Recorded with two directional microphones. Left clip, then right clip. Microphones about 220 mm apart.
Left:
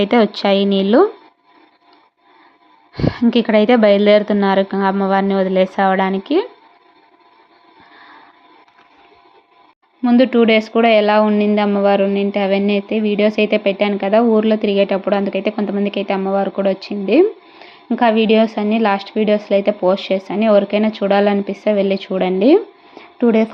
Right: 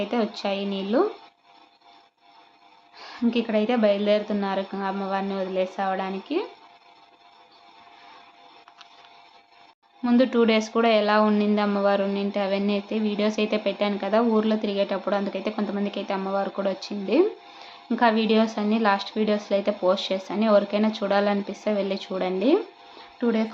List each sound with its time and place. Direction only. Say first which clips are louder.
0.0 s a woman's voice: left 12 dB; 40° left (ahead or behind)
2.9 s a woman's voice: left 11 dB; 35° left (ahead or behind)
10.0 s speech: left 8 dB; 20° left (ahead or behind)